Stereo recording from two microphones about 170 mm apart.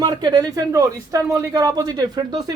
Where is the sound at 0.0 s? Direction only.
25° right (ahead or behind).